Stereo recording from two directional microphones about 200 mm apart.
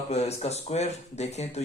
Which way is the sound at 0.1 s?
30° left (ahead or behind).